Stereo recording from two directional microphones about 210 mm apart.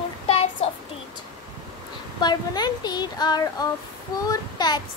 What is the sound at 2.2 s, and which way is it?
Child singing, 20° left (ahead or behind).